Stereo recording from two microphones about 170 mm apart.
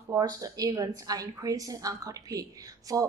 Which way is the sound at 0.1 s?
20° right (ahead or behind).